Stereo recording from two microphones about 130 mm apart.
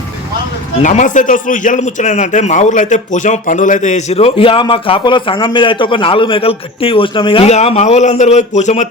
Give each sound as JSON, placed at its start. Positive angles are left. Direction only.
{"t": 0.8, "sound": "a man's voice", "side_deg": 75}
{"t": 7.5, "sound": "a man's voice", "side_deg": 55}